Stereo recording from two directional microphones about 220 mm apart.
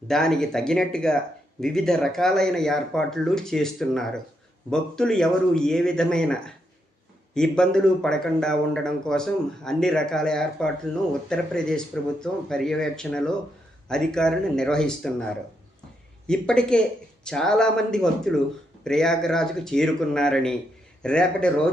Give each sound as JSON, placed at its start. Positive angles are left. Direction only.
{"t": 0.1, "sound": "a man's voice", "side_deg": 0}